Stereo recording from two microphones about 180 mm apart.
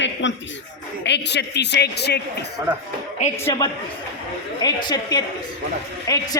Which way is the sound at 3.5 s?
20° left (ahead or behind).